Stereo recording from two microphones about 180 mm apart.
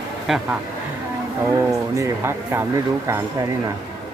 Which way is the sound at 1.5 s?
15° right (ahead or behind).